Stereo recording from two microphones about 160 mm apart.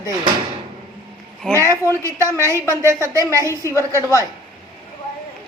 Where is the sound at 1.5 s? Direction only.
20° right (ahead or behind).